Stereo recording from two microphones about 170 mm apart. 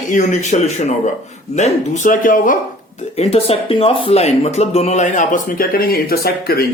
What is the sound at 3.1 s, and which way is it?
Speech, 35° left (ahead or behind).